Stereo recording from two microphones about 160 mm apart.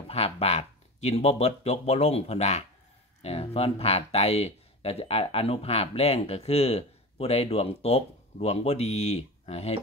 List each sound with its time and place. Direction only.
0.1 s speech: 40° left (ahead or behind)